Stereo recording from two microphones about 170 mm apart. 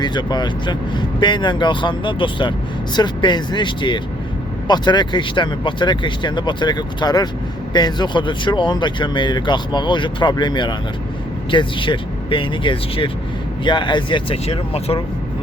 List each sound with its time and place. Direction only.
0.0 s speech: 25° left (ahead or behind)